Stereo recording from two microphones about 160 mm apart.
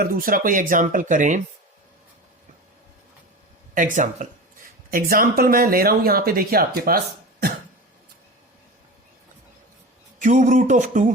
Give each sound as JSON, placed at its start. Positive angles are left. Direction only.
{"t": 0.0, "sound": "speech", "side_deg": -60}
{"t": 3.8, "sound": "speech", "side_deg": -55}
{"t": 4.9, "sound": "speech", "side_deg": -65}
{"t": 10.2, "sound": "speech", "side_deg": -50}